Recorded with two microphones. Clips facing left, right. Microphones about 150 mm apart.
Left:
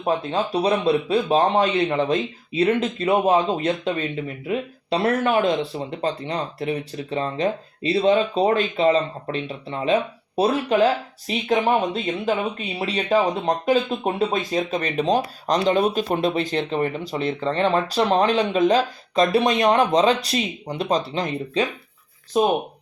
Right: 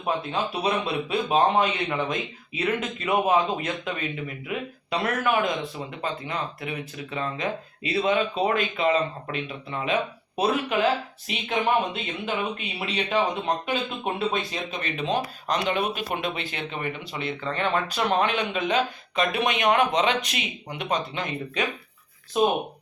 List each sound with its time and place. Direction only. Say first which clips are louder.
0.0 s speech: left 4 dB; 35° left (ahead or behind)